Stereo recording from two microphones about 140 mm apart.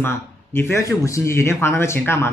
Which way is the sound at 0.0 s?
15° left (ahead or behind).